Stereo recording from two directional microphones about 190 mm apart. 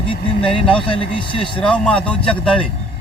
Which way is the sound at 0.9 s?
30° left (ahead or behind).